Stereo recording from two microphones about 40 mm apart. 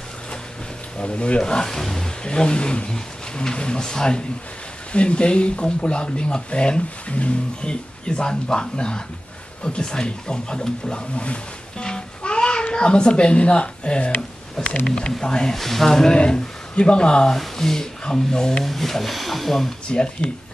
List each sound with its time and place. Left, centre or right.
0.9 s speech: left
1.4 s speech: centre
2.2 s speech: left
11.8 s music: left
14.9 s speech: centre
15.5 s speech: centre
16.2 s speech: left
17.3 s speech: centre
18.6 s speech: centre
19.9 s speech: left